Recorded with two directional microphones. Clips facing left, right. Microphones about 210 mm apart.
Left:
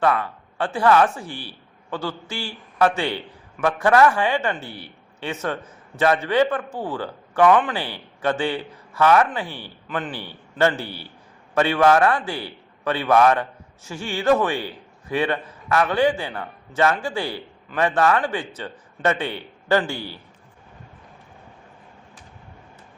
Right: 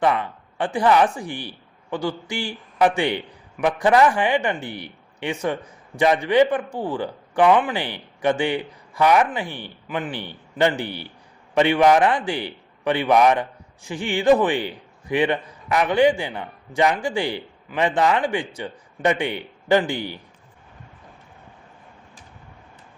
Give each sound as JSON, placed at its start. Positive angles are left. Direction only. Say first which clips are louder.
{"t": 0.0, "sound": "a man's voice", "louder": "even", "side_deg": -15}